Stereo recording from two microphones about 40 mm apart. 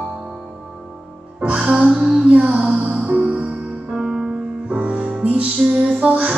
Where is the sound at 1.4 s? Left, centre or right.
Right.